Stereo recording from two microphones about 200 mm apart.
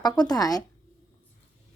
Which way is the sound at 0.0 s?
20° left (ahead or behind).